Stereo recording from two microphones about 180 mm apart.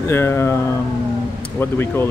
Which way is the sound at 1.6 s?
15° left (ahead or behind).